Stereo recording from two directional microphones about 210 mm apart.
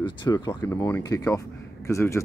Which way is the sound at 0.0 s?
20° left (ahead or behind).